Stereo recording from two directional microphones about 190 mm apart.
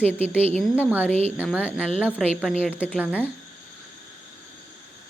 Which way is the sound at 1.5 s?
5° right (ahead or behind).